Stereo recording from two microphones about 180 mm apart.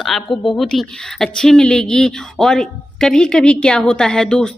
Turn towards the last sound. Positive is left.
turn(degrees=5)  # may be behind; listen again after turning